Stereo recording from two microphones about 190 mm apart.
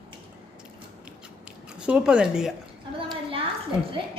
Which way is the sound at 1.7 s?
5° right (ahead or behind).